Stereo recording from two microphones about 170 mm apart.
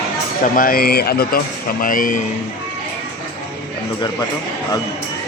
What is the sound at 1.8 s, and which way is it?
Speech, 55° left (ahead or behind).